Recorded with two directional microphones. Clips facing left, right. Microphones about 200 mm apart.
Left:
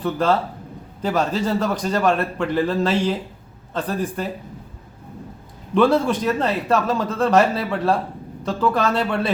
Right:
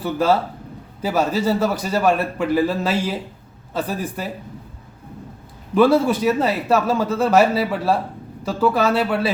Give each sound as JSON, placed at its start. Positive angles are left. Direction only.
{"t": 0.0, "sound": "a man's voice", "side_deg": -5}
{"t": 5.7, "sound": "a man's voice", "side_deg": -5}